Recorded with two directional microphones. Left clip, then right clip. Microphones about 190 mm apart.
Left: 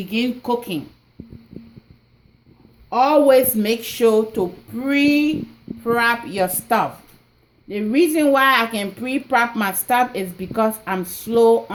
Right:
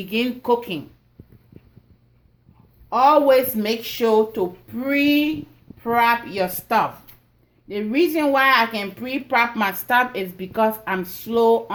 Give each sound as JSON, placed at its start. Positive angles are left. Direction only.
{"t": 0.1, "sound": "speech", "side_deg": 60}
{"t": 2.9, "sound": "a woman's voice", "side_deg": 50}